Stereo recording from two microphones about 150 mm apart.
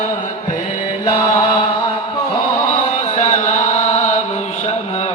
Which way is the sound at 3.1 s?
50° left (ahead or behind).